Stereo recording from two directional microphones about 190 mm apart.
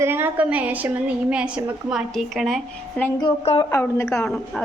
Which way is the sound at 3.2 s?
25° left (ahead or behind).